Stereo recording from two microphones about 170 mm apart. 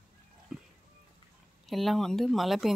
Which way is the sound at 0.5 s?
Centre (ahead or behind).